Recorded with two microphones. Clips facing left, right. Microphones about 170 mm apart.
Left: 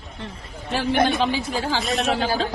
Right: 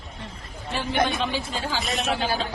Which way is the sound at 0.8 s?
65° left (ahead or behind).